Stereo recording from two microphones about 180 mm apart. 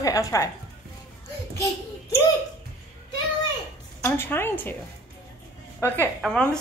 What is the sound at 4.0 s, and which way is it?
Speech, 10° left (ahead or behind).